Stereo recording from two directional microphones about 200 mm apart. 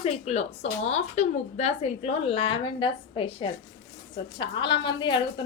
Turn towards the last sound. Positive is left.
turn(degrees=25)  # may be behind; listen again after turning